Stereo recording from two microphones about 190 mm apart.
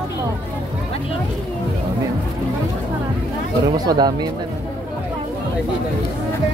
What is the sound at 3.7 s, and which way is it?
Speech, 20° right (ahead or behind).